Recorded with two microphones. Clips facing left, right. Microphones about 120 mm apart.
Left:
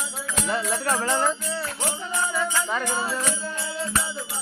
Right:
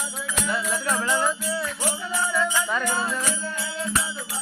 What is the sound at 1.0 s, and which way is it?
Music, 30° left (ahead or behind).